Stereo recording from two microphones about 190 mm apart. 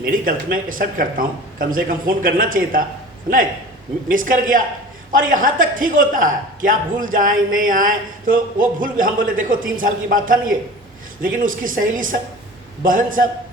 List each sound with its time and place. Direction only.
0.0 s a man's voice: 50° right (ahead or behind)
4.1 s a man's voice: 45° right (ahead or behind)